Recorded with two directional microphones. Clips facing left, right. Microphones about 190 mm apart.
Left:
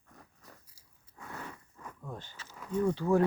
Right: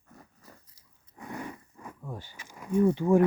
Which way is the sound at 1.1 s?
15° right (ahead or behind).